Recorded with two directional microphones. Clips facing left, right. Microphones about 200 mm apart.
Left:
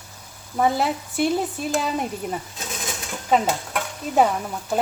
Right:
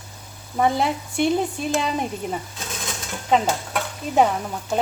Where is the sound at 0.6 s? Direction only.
5° left (ahead or behind).